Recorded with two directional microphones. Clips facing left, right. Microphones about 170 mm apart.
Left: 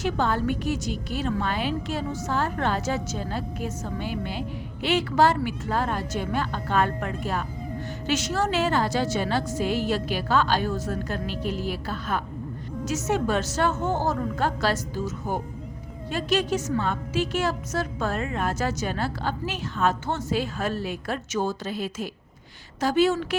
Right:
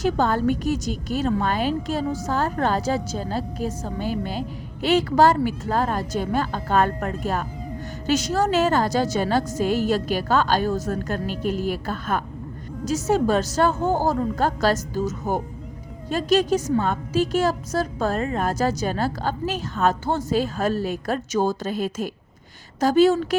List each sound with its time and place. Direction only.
0.0 s a woman's voice: 40° right (ahead or behind)
12.8 s a woman's voice: 35° right (ahead or behind)